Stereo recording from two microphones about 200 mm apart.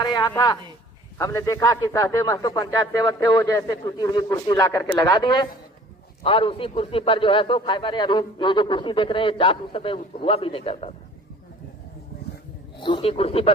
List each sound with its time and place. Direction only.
0.0 s a man's voice: 20° left (ahead or behind)
12.8 s a man's voice: 25° left (ahead or behind)